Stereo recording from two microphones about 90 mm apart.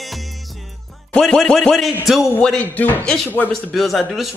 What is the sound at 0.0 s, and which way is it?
Music, centre (ahead or behind).